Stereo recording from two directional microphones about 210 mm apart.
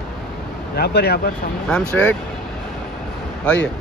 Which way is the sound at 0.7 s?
50° left (ahead or behind).